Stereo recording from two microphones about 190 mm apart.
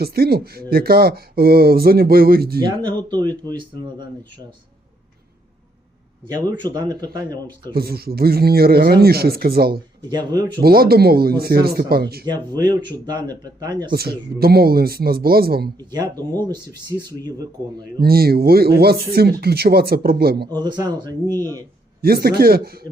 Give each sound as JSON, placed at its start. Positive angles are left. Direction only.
{"t": 0.0, "sound": "speech", "side_deg": -55}
{"t": 2.6, "sound": "speech", "side_deg": -20}
{"t": 6.3, "sound": "speech", "side_deg": -25}
{"t": 7.7, "sound": "speech", "side_deg": -55}
{"t": 10.1, "sound": "speech", "side_deg": -20}
{"t": 10.6, "sound": "speech", "side_deg": -55}
{"t": 12.2, "sound": "speech", "side_deg": -20}
{"t": 13.9, "sound": "speech", "side_deg": -55}
{"t": 15.8, "sound": "speech", "side_deg": -20}
{"t": 18.0, "sound": "speech", "side_deg": -55}
{"t": 20.5, "sound": "speech", "side_deg": -20}
{"t": 22.0, "sound": "speech", "side_deg": -55}